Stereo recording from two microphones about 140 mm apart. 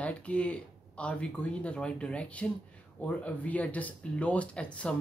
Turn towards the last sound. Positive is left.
turn(degrees=10)  # may be behind; listen again after turning